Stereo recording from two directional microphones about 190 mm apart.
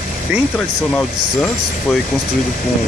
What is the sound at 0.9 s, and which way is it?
Speech, 5° left (ahead or behind).